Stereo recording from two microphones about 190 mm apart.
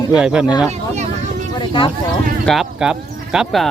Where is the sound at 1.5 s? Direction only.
25° left (ahead or behind).